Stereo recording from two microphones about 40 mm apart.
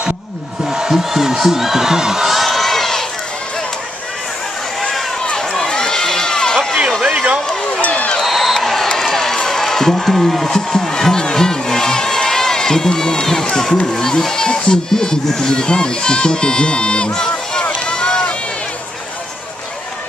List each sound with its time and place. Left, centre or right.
0.7 s speech: centre
5.6 s crowd: centre
7.8 s a sound: left
8.2 s a sound: centre
13.9 s speech: centre
17.8 s run: centre